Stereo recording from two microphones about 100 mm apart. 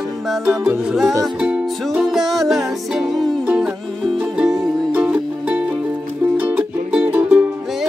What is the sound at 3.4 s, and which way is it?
Music, 10° right (ahead or behind).